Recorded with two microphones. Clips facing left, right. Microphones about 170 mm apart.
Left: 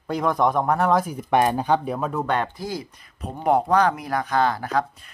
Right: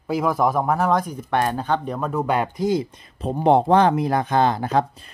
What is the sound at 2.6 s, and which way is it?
Speech, 25° right (ahead or behind).